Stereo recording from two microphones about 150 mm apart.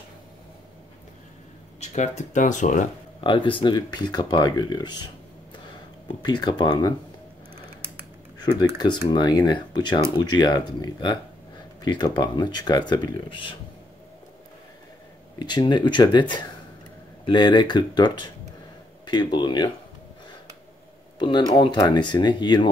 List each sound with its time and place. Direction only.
1.8 s speech: 50° left (ahead or behind)
3.2 s speech: 35° left (ahead or behind)
8.4 s speech: 25° left (ahead or behind)
15.3 s speech: 30° left (ahead or behind)
21.2 s speech: 30° left (ahead or behind)